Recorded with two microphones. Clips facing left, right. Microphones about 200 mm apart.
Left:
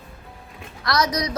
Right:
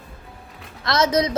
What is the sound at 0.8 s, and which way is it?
Speech, 25° right (ahead or behind).